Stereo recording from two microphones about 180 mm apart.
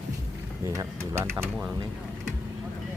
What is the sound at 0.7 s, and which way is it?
Speech, 15° right (ahead or behind).